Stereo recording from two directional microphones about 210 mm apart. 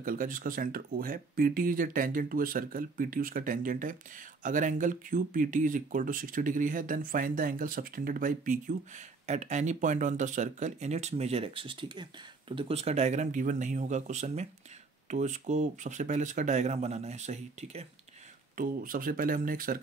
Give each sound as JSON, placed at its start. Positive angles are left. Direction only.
{"t": 0.0, "sound": "speech", "side_deg": -40}